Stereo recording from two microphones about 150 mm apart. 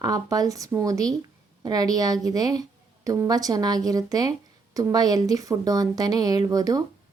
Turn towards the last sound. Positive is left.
turn(degrees=-25)  # may be behind; listen again after turning